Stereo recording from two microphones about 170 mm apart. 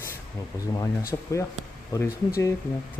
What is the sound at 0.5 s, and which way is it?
Speech, 20° left (ahead or behind).